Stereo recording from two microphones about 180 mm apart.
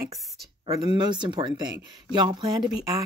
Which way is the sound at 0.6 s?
25° right (ahead or behind).